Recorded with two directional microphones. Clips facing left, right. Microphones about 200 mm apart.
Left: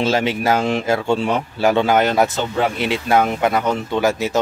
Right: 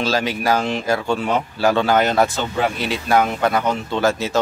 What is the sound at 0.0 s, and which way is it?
Speech, 25° left (ahead or behind).